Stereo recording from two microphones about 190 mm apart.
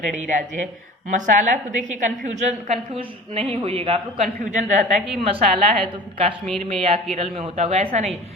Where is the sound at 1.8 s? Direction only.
40° right (ahead or behind).